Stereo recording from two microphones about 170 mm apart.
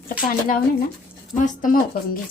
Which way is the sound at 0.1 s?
55° left (ahead or behind).